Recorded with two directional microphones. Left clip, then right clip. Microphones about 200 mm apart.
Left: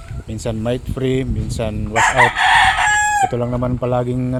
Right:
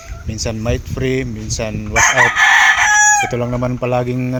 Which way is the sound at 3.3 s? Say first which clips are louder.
Right 1 dB; 5° right (ahead or behind).